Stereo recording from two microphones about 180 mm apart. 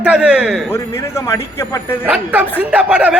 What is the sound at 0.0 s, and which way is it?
Speech, 5° right (ahead or behind).